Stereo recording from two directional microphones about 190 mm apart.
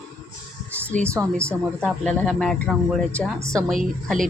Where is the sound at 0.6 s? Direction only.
10° left (ahead or behind).